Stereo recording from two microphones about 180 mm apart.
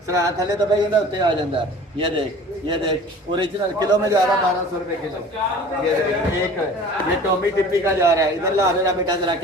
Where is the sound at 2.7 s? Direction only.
25° right (ahead or behind).